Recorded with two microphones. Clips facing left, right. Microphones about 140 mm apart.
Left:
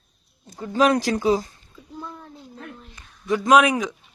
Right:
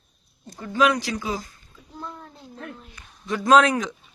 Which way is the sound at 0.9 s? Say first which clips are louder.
Left 6 dB; 55° left (ahead or behind).